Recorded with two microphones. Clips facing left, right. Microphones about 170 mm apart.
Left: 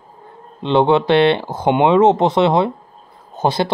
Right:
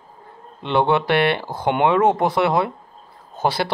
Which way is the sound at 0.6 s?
20° left (ahead or behind).